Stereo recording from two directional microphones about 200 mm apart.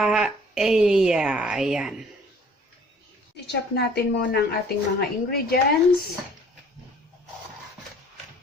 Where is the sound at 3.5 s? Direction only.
55° left (ahead or behind).